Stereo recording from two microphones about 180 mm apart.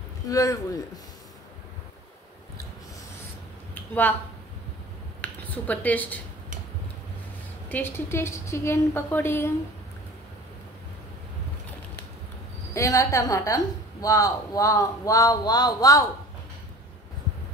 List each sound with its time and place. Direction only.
0.3 s a man's voice: 20° left (ahead or behind)
3.7 s a sound: 10° left (ahead or behind)
5.2 s speech: 10° left (ahead or behind)
7.7 s a woman's voice: 15° left (ahead or behind)
12.7 s a woman's voice: 15° left (ahead or behind)